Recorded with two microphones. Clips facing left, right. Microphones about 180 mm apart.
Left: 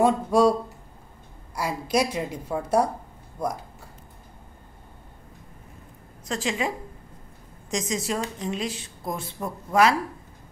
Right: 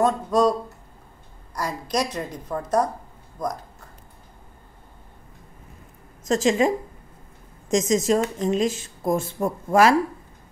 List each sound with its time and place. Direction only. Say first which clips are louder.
0.0 s a woman's voice: left 1 dB; 10° left (ahead or behind)
6.2 s speech: right 8 dB; 45° right (ahead or behind)
7.7 s speech: right 8 dB; 45° right (ahead or behind)